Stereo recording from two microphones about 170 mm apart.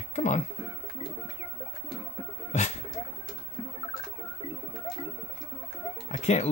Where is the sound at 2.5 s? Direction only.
40° left (ahead or behind).